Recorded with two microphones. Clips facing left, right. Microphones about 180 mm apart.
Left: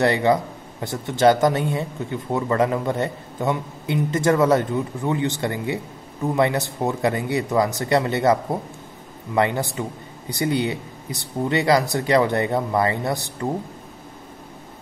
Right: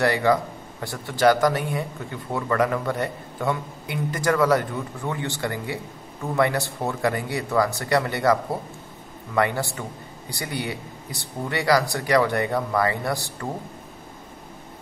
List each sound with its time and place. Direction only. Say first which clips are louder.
0.0 s a man's voice: left 2 dB; 20° left (ahead or behind)